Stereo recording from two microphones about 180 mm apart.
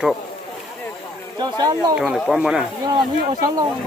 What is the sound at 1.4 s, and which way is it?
Speech, 20° right (ahead or behind).